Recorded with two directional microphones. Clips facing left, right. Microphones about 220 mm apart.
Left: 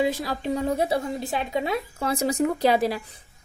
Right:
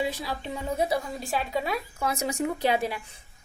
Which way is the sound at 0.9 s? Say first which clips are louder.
Left 3 dB; 20° left (ahead or behind).